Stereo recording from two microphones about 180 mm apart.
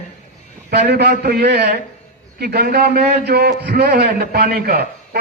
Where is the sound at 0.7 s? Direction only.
65° right (ahead or behind).